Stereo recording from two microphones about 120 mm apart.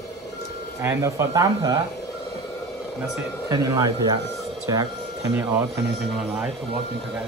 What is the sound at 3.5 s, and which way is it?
Speech, 30° right (ahead or behind).